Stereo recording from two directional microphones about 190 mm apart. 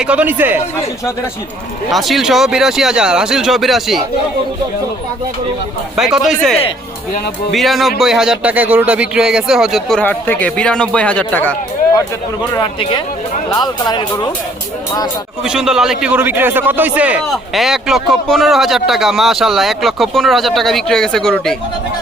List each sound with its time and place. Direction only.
0.0 s speech: 5° right (ahead or behind)
1.9 s a man's voice: centre (ahead or behind)
6.0 s a man's voice: centre (ahead or behind)
10.0 s speech: 10° left (ahead or behind)
12.5 s speech: 25° left (ahead or behind)
15.4 s a man's voice: 5° right (ahead or behind)